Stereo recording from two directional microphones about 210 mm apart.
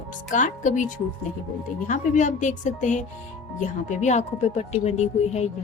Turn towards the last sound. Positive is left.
turn(degrees=30)  # may be behind; listen again after turning